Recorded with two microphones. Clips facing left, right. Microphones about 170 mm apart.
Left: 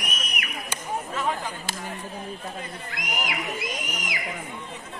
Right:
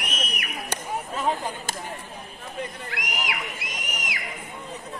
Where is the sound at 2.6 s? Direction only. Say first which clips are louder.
Right 3 dB; 70° right (ahead or behind).